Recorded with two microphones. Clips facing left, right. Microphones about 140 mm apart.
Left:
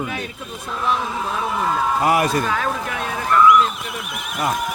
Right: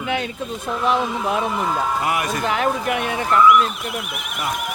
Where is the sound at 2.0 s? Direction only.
35° left (ahead or behind).